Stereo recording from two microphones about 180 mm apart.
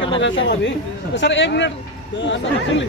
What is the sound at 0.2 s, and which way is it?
Speech, 85° left.